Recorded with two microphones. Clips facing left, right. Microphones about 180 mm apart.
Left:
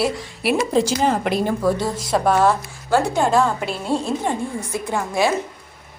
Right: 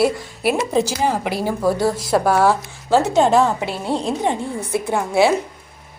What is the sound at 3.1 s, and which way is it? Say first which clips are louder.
A woman's voice: right 3 dB; 20° right (ahead or behind).